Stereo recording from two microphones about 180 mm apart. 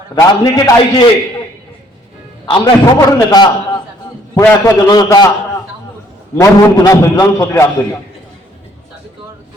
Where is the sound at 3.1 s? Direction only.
20° left (ahead or behind).